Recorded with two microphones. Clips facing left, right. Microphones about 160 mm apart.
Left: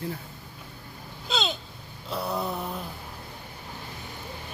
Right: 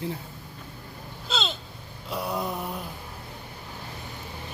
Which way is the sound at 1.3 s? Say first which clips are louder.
Left 2 dB; centre (ahead or behind).